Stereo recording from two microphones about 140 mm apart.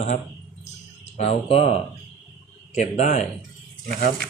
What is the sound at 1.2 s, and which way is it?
Speech, 45° left (ahead or behind).